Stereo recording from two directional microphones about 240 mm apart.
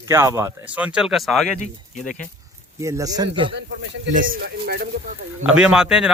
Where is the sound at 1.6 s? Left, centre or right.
Left.